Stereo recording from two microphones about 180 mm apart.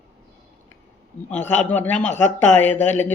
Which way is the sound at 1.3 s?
10° left (ahead or behind).